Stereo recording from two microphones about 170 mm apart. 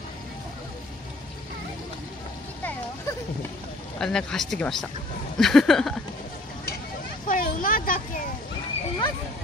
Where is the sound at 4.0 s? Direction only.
5° left (ahead or behind).